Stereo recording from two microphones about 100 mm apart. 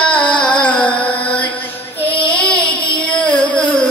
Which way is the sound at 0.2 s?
50° left (ahead or behind).